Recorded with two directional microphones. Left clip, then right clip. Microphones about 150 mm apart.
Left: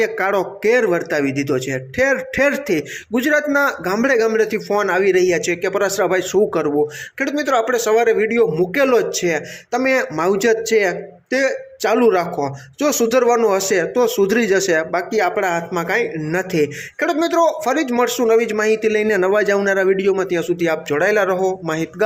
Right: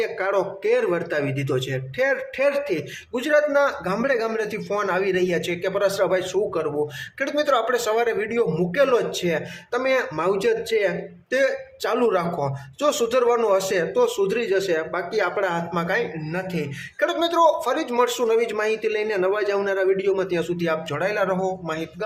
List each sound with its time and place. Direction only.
0.0 s speech: 30° left (ahead or behind)